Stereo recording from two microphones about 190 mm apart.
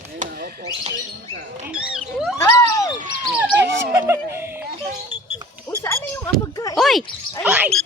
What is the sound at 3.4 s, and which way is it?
Speech, 10° right (ahead or behind).